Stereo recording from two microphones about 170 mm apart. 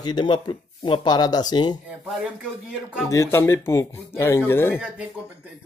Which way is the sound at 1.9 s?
5° right (ahead or behind).